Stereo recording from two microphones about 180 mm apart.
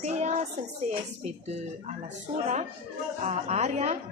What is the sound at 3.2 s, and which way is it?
Speech, 35° right (ahead or behind).